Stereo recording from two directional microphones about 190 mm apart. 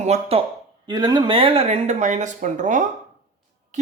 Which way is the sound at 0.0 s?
35° right (ahead or behind).